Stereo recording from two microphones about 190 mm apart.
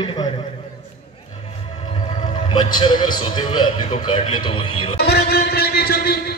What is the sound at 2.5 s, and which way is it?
A man's voice, 25° left (ahead or behind).